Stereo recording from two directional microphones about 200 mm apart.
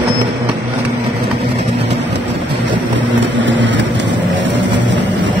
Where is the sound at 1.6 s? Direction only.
60° right (ahead or behind).